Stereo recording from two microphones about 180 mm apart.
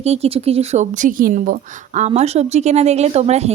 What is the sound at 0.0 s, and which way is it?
A woman's voice, 35° right (ahead or behind).